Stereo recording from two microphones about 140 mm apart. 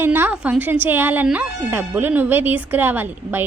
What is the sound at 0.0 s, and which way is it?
A woman's voice, 15° right (ahead or behind).